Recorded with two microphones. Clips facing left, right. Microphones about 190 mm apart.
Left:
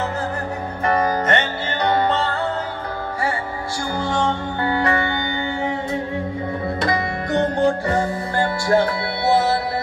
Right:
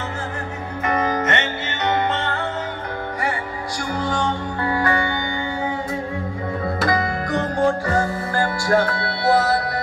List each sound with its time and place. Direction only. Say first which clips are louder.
0.8 s music: left 2 dB; 35° left (ahead or behind)
4.0 s music: left 2 dB; 25° left (ahead or behind)
6.8 s music: right 3 dB; 25° left (ahead or behind)